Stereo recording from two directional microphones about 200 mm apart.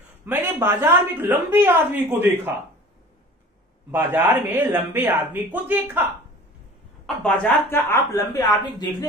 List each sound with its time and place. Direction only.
0.2 s a woman's voice: 10° right (ahead or behind)
3.9 s a woman's voice: 10° right (ahead or behind)
7.2 s speech: 10° left (ahead or behind)